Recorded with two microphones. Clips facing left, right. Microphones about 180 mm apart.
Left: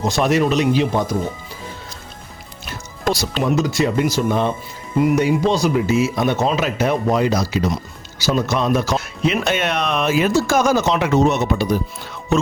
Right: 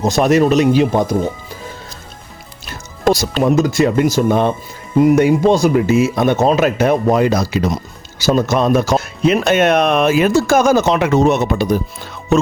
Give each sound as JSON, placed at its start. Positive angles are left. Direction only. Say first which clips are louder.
{"t": 0.0, "sound": "speech", "louder": "right 5 dB", "side_deg": -45}
{"t": 3.1, "sound": "speech", "louder": "right 6 dB", "side_deg": -45}